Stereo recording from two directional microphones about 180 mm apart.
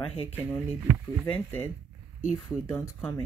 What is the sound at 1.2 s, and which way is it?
Speech, 10° left (ahead or behind).